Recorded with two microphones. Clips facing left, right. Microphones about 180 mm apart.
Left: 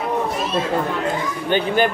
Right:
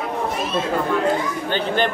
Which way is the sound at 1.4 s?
10° left (ahead or behind).